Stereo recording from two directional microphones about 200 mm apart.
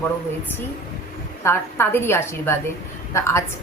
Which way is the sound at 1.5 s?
10° left (ahead or behind).